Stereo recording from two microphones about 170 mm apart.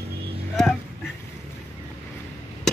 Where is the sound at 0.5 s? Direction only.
Centre (ahead or behind).